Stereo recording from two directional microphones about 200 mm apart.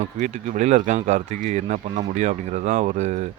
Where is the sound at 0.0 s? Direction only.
35° right (ahead or behind).